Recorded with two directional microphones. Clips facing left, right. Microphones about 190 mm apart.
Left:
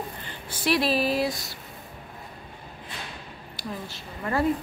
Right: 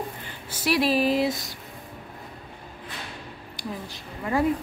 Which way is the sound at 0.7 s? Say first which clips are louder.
Right 2 dB; 10° right (ahead or behind).